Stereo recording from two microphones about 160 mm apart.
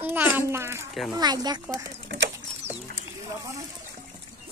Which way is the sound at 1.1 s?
25° right (ahead or behind).